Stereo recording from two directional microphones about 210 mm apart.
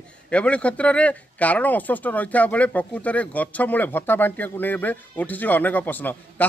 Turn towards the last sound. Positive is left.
turn(degrees=10)  # may be behind; listen again after turning